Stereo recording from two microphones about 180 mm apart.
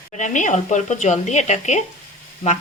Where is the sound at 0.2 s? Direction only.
45° left (ahead or behind).